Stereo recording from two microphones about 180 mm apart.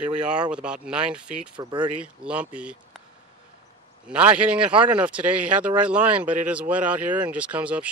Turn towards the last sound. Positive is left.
turn(degrees=-5)  # may be behind; listen again after turning